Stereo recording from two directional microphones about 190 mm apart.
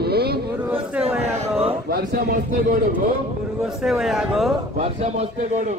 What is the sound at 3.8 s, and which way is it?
Speech, centre (ahead or behind).